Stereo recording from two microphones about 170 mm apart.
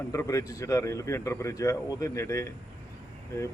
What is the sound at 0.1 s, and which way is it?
Speech, 20° left (ahead or behind).